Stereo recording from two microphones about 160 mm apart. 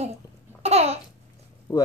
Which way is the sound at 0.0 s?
40° right (ahead or behind).